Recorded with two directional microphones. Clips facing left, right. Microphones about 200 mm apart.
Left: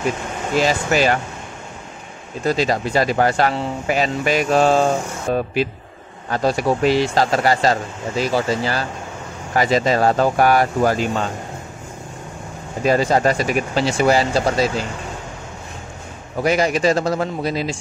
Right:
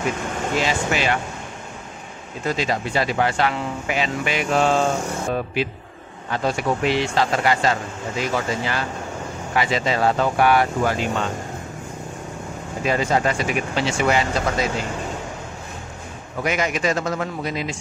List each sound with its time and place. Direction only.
0.6 s speech: 40° left (ahead or behind)
2.4 s speech: 35° left (ahead or behind)
12.8 s speech: 40° left (ahead or behind)
16.4 s speech: 35° left (ahead or behind)